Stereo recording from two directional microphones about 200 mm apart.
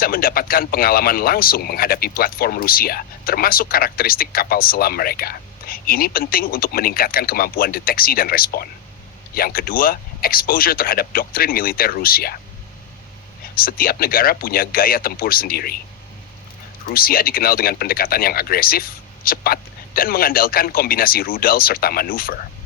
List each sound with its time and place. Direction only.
0.0 s speech: 45° left (ahead or behind)
13.6 s speech: 45° left (ahead or behind)
16.8 s speech: 50° left (ahead or behind)